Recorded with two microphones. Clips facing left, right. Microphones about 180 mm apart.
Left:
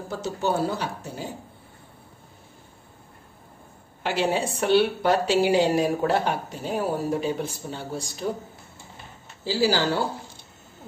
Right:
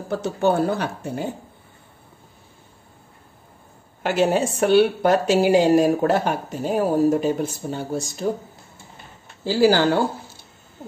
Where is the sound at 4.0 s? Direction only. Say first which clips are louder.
Right 5 dB; 45° right (ahead or behind).